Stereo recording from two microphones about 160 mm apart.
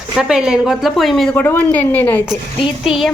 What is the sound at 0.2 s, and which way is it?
A woman's voice, 5° right (ahead or behind).